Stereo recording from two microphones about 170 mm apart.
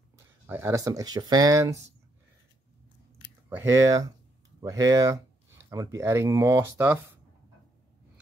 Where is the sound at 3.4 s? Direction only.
15° right (ahead or behind).